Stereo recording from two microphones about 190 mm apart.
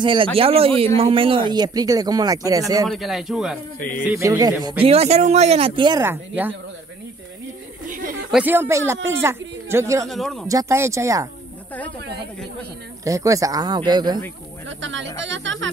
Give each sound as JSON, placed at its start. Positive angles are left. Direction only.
{"t": 0.0, "sound": "speech", "side_deg": -25}
{"t": 2.9, "sound": "speech", "side_deg": 0}
{"t": 4.0, "sound": "speech", "side_deg": -15}
{"t": 4.8, "sound": "speech", "side_deg": -35}
{"t": 7.9, "sound": "a sound", "side_deg": -45}
{"t": 8.3, "sound": "speech", "side_deg": -10}
{"t": 10.0, "sound": "speech", "side_deg": 0}
{"t": 10.5, "sound": "speech", "side_deg": -15}
{"t": 13.0, "sound": "speech", "side_deg": -15}
{"t": 14.7, "sound": "speech", "side_deg": -75}